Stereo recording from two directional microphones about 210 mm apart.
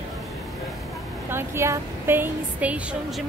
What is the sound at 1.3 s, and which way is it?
A woman's voice, 10° right (ahead or behind).